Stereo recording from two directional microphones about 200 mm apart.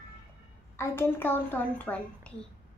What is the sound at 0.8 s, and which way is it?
A woman's voice, 10° left (ahead or behind).